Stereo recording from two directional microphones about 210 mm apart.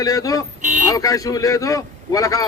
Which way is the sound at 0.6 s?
35° right (ahead or behind).